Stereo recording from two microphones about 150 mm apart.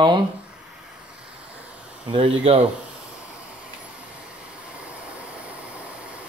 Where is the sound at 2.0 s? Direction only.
40° right (ahead or behind).